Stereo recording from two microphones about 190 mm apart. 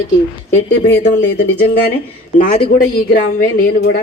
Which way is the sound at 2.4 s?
45° left (ahead or behind).